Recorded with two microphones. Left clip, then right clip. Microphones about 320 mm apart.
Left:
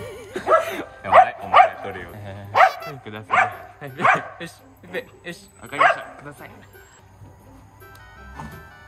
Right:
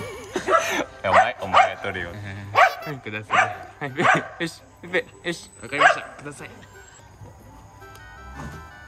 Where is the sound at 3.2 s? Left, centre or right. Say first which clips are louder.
Left 1 dB; left.